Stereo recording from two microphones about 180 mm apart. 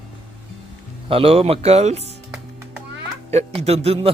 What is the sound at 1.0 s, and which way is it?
Speech, 30° right (ahead or behind).